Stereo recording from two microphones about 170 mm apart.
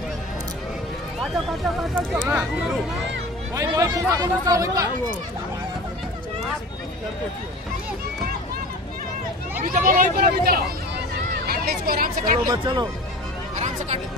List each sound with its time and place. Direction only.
1.2 s speech: centre (ahead or behind)
3.5 s speech: 20° right (ahead or behind)
9.6 s speech: 55° right (ahead or behind)
12.4 s speech: 25° right (ahead or behind)
13.6 s music: 40° right (ahead or behind)